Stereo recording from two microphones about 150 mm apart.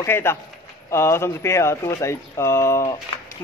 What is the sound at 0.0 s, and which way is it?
Speech, 15° left (ahead or behind).